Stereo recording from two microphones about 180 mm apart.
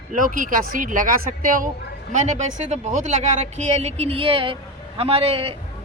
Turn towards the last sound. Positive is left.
turn(degrees=-30)  # may be behind; listen again after turning